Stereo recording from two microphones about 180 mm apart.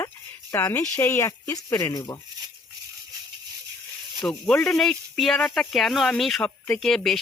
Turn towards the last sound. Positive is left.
turn(degrees=0)  # may be behind; listen again after turning